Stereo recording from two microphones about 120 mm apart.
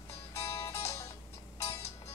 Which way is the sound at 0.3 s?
25° left (ahead or behind).